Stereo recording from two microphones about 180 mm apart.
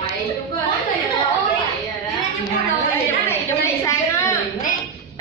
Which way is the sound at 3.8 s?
15° left (ahead or behind).